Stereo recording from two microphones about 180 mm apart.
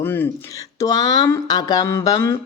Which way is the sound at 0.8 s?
20° left (ahead or behind).